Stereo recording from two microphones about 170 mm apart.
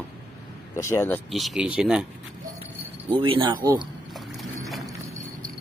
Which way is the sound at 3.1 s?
30° right (ahead or behind).